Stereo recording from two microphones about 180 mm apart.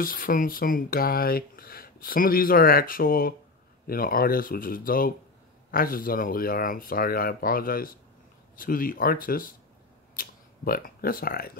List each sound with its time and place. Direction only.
0.0 s speech: 50° left (ahead or behind)